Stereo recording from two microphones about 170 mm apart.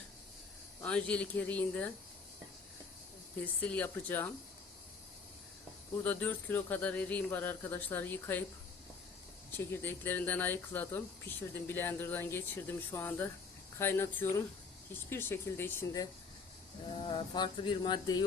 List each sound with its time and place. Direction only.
0.8 s speech: 5° left (ahead or behind)
3.4 s speech: 10° left (ahead or behind)
6.0 s speech: 10° left (ahead or behind)
9.5 s speech: 15° left (ahead or behind)
17.1 s speech: 25° left (ahead or behind)